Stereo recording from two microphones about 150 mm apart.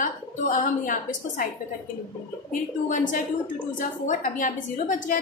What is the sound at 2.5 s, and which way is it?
A woman's voice, 60° left (ahead or behind).